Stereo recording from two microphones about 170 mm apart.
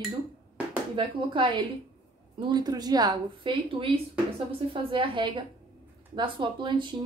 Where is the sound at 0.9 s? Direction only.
30° right (ahead or behind).